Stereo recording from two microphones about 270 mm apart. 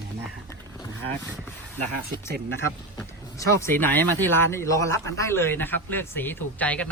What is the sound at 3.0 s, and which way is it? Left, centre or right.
Speech, centre.